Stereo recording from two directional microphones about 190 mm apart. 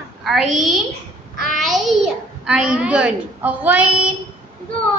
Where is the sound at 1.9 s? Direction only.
Centre (ahead or behind).